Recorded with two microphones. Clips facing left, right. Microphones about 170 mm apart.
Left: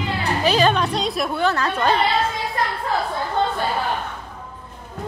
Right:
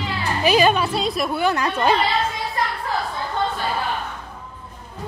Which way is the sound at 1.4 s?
15° right (ahead or behind).